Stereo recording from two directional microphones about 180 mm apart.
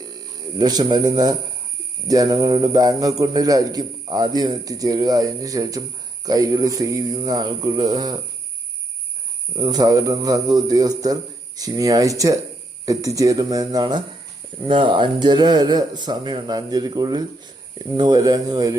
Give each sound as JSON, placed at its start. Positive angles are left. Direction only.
{"t": 0.6, "sound": "a man's voice", "side_deg": -20}
{"t": 9.6, "sound": "a man's voice", "side_deg": -20}